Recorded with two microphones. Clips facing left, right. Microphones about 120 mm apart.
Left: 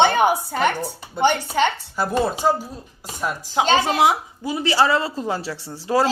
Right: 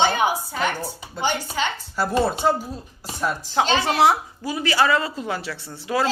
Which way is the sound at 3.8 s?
15° left (ahead or behind).